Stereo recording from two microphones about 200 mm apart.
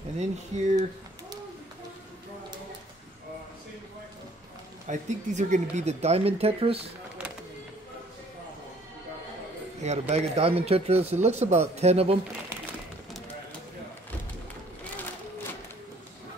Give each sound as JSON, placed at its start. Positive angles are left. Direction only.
{"t": 0.2, "sound": "speech", "side_deg": -35}
{"t": 4.8, "sound": "speech", "side_deg": -35}
{"t": 9.8, "sound": "speech", "side_deg": -35}